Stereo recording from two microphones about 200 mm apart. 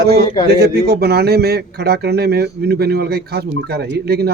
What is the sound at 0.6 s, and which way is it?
A man's voice, 55° right (ahead or behind).